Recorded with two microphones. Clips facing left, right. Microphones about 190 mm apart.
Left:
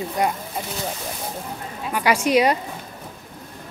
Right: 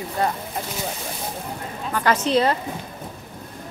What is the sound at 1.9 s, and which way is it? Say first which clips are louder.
Speech: left 1 dB; 10° left (ahead or behind).